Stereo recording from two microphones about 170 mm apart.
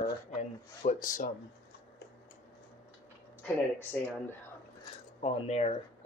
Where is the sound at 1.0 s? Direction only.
55° left (ahead or behind).